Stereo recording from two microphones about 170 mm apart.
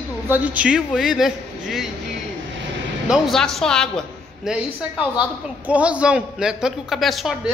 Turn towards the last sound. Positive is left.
turn(degrees=-5)  # may be behind; listen again after turning